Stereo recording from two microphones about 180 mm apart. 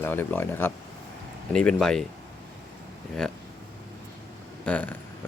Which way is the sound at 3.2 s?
5° left (ahead or behind).